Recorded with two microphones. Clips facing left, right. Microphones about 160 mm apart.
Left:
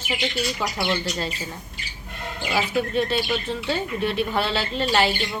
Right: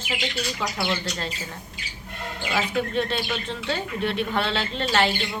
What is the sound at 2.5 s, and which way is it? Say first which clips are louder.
A woman's voice: left 2 dB; 5° left (ahead or behind).